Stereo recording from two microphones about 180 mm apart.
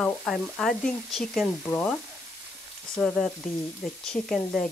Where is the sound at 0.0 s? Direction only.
5° left (ahead or behind).